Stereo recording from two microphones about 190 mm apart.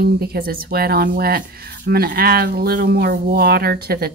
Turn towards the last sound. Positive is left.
turn(degrees=-55)  # may be behind; listen again after turning